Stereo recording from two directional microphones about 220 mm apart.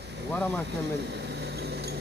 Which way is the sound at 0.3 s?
5° left (ahead or behind).